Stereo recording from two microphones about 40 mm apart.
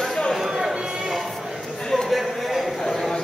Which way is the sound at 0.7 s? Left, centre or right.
Right.